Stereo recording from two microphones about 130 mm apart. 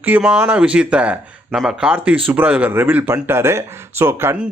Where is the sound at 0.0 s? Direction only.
10° right (ahead or behind).